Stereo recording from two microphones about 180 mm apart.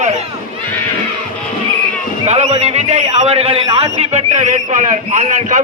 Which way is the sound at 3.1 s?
35° right (ahead or behind).